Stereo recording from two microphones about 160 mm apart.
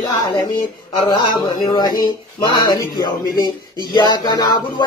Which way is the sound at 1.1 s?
25° left (ahead or behind).